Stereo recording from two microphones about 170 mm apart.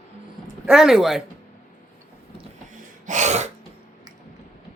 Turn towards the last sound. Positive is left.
turn(degrees=-40)  # may be behind; listen again after turning